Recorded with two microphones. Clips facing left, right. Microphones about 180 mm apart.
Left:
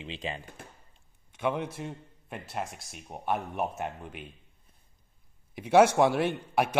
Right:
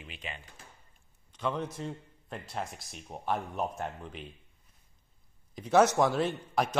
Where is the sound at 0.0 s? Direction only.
30° left (ahead or behind).